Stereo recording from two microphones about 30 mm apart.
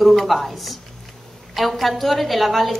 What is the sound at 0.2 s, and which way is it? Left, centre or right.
A woman's voice, centre.